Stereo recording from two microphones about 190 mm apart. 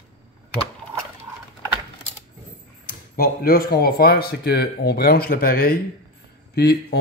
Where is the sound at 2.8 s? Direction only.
50° left (ahead or behind).